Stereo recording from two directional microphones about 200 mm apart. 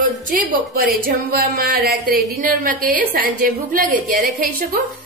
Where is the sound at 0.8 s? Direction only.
45° right (ahead or behind).